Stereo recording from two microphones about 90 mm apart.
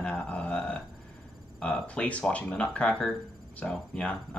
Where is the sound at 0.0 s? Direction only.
15° left (ahead or behind).